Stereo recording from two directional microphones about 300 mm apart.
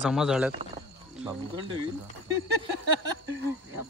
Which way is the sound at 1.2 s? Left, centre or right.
Centre.